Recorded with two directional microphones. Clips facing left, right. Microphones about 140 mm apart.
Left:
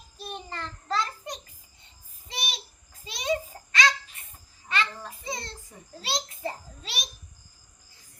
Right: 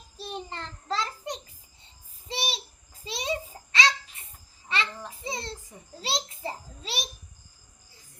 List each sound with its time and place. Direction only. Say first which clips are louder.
0.2 s child singing: right 1 dB; 30° right (ahead or behind)
2.2 s babbling: right 4 dB; 30° right (ahead or behind)
3.1 s a sound: left 3 dB; 30° right (ahead or behind)